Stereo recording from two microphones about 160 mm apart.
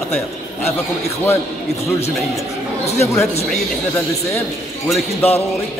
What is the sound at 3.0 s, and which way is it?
Speech, 15° left (ahead or behind).